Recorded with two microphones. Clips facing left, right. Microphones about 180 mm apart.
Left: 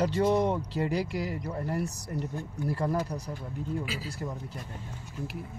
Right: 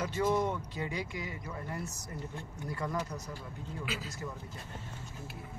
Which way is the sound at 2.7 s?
35° left (ahead or behind).